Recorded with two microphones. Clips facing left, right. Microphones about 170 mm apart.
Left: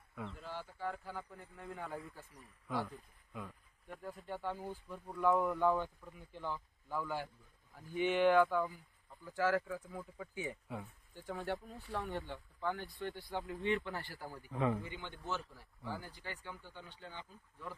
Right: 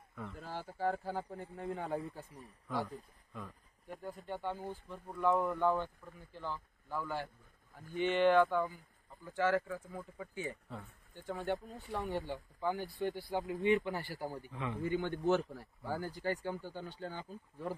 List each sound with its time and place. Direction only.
0.4 s speech: 40° right (ahead or behind); by 2.2 s 25° right (ahead or behind)
3.9 s speech: centre (ahead or behind)
10.3 s speech: 10° left (ahead or behind)
12.7 s speech: 40° right (ahead or behind)
13.0 s speech: 15° right (ahead or behind)
14.5 s a man's voice: 35° left (ahead or behind)
14.9 s speech: 50° right (ahead or behind)